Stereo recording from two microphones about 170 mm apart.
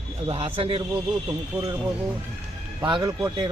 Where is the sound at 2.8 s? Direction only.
25° right (ahead or behind).